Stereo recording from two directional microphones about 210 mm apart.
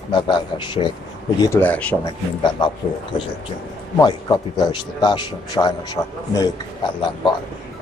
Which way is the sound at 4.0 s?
20° left (ahead or behind).